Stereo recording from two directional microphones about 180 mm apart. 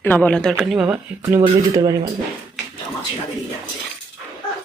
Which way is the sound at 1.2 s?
20° right (ahead or behind).